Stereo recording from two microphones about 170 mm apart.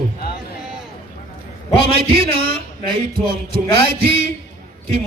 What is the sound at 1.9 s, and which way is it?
Speech, 35° right (ahead or behind).